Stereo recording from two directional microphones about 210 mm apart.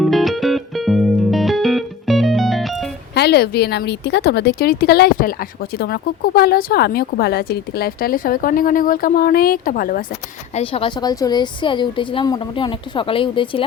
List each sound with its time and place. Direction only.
0.0 s music: centre (ahead or behind)
3.2 s speech: 50° left (ahead or behind)
10.5 s speech: 25° left (ahead or behind)